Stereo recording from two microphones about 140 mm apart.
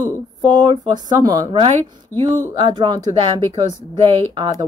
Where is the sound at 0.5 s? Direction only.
30° right (ahead or behind).